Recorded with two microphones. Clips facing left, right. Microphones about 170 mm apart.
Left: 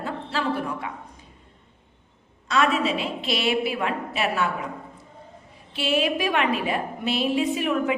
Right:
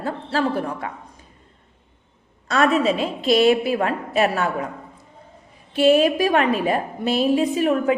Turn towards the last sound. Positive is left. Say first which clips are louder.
# right 4 dB
turn(degrees=-40)  # may be behind; listen again after turning